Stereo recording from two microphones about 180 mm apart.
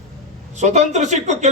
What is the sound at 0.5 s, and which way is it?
Speech, 40° right (ahead or behind).